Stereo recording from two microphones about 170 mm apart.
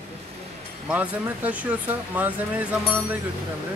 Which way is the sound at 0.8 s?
10° right (ahead or behind).